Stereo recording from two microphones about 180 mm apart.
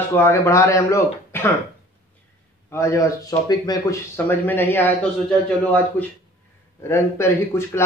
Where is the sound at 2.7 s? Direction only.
15° left (ahead or behind).